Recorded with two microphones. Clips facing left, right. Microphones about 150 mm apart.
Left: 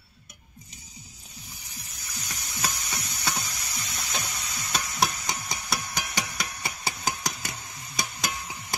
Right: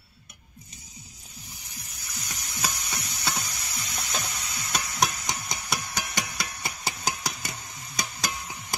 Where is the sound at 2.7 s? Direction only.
Centre (ahead or behind).